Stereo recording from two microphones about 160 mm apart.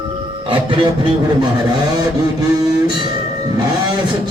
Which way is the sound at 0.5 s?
30° right (ahead or behind).